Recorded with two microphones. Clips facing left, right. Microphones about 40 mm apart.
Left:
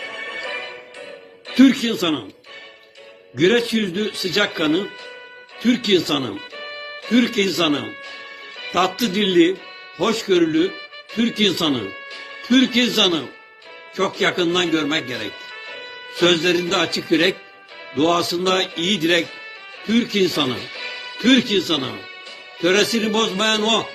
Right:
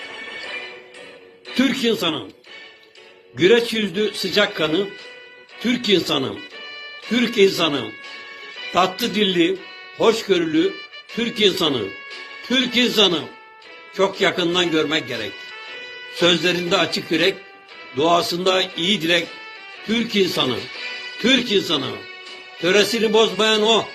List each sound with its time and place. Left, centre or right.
0.0 s music: left
1.5 s speech: centre
3.3 s speech: centre
6.3 s music: left
7.1 s speech: centre
15.5 s music: left
16.0 s speech: centre
20.6 s music: left
21.2 s speech: centre